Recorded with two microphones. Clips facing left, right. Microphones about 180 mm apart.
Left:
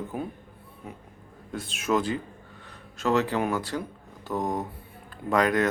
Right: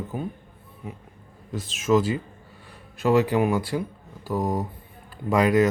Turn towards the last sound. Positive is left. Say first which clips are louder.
# right 4 dB
turn(degrees=-5)  # may be behind; listen again after turning